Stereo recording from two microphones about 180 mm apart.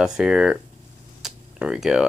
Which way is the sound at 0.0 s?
5° right (ahead or behind).